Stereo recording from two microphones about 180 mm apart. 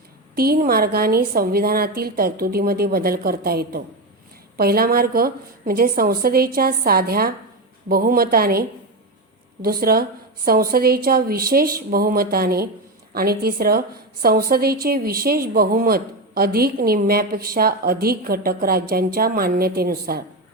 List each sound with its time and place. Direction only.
0.3 s a woman's voice: 55° right (ahead or behind)